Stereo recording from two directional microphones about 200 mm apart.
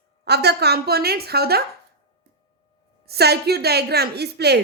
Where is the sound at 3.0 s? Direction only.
55° right (ahead or behind).